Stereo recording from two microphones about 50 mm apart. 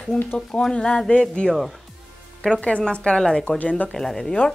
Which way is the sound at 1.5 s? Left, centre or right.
Centre.